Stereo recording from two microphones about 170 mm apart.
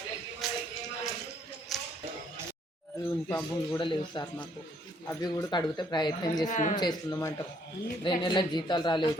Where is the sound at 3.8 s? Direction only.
25° left (ahead or behind).